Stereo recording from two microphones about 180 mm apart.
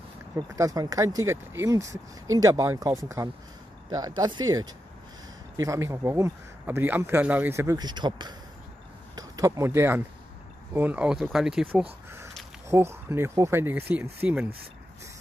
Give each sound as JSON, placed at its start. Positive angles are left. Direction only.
{"t": 0.5, "sound": "speech", "side_deg": -20}